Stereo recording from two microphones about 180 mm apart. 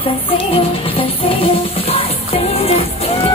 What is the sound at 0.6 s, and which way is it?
Music, 30° left (ahead or behind).